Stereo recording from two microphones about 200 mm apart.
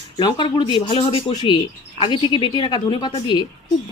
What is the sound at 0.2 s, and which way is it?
Speech, 25° left (ahead or behind).